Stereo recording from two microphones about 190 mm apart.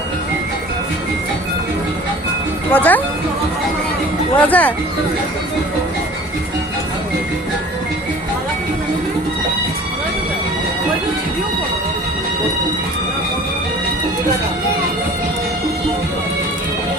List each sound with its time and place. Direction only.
2.7 s speech: 10° left (ahead or behind)
4.4 s speech: 10° left (ahead or behind)